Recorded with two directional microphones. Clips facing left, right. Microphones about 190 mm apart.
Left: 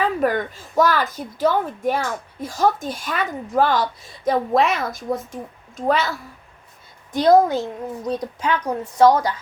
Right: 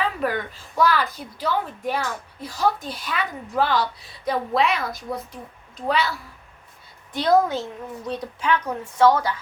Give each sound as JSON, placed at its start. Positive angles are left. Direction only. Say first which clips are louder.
{"t": 0.2, "sound": "a woman's voice", "louder": "left 5 dB", "side_deg": 45}